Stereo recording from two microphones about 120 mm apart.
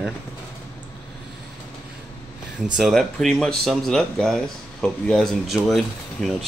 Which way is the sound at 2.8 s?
Centre (ahead or behind).